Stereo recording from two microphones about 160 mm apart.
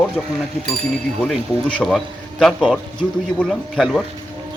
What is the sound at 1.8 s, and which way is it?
A man's voice, 5° left (ahead or behind).